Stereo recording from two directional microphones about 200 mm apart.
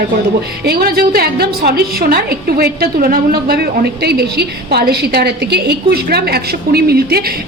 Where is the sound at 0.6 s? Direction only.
50° right (ahead or behind).